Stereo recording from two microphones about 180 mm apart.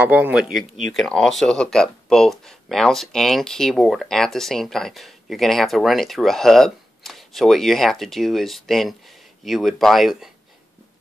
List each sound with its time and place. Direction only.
0.0 s speech: 10° right (ahead or behind)
0.5 s speech: 50° right (ahead or behind)
0.9 s speech: 5° left (ahead or behind)